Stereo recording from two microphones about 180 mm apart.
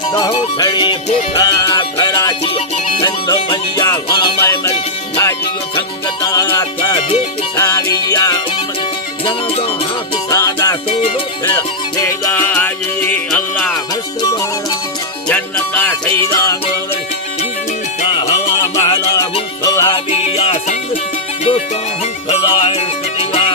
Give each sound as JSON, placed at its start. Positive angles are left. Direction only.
{"t": 0.1, "sound": "music", "side_deg": 25}
{"t": 6.2, "sound": "music", "side_deg": 20}
{"t": 9.2, "sound": "music", "side_deg": 35}
{"t": 10.2, "sound": "music", "side_deg": 20}
{"t": 11.9, "sound": "music", "side_deg": 10}
{"t": 15.3, "sound": "music", "side_deg": 10}
{"t": 18.1, "sound": "music", "side_deg": 25}
{"t": 20.1, "sound": "music", "side_deg": 35}
{"t": 22.3, "sound": "music", "side_deg": 30}